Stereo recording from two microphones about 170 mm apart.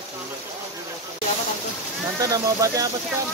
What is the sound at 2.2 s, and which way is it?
Speech, 20° right (ahead or behind).